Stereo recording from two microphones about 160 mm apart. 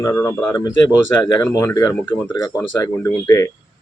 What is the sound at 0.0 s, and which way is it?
Speech, 20° left (ahead or behind).